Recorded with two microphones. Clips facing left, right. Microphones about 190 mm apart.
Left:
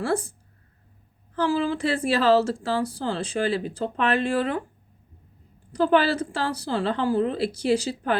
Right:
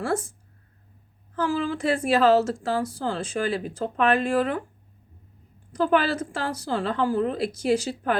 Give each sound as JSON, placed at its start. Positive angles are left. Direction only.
{"t": 0.0, "sound": "speech", "side_deg": 30}
{"t": 1.4, "sound": "speech", "side_deg": 30}
{"t": 5.7, "sound": "speech", "side_deg": 30}